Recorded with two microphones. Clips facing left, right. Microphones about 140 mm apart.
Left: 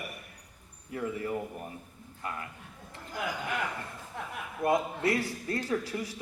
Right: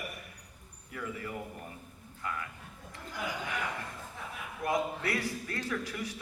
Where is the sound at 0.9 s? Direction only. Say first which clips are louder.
Left 6 dB; 30° left (ahead or behind).